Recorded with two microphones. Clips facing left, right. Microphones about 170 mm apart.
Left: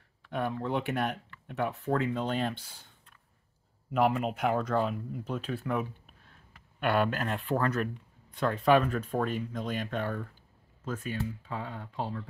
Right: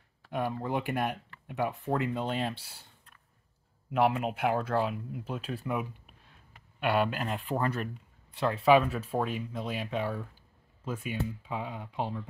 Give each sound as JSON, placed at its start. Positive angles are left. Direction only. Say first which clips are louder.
{"t": 0.3, "sound": "speech", "louder": "even", "side_deg": -10}
{"t": 3.9, "sound": "speech", "louder": "even", "side_deg": -5}